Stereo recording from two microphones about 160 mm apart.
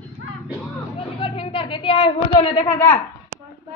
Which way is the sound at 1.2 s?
35° left (ahead or behind).